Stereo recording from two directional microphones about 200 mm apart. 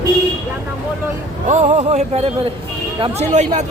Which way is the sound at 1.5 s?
35° right (ahead or behind).